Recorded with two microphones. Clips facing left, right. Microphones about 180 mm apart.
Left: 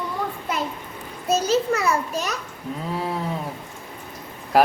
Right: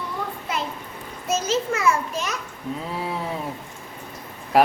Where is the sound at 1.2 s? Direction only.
35° left (ahead or behind).